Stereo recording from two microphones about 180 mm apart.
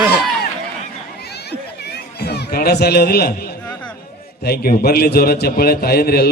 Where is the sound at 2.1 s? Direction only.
65° left (ahead or behind).